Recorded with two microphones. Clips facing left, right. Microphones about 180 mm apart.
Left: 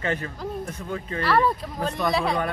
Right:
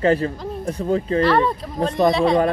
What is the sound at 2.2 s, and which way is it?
Speech, 30° right (ahead or behind).